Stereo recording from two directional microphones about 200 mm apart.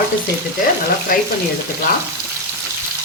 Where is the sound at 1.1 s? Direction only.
45° left (ahead or behind).